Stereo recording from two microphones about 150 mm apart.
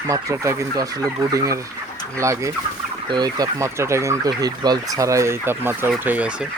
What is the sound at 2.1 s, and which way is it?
Speech, 20° right (ahead or behind).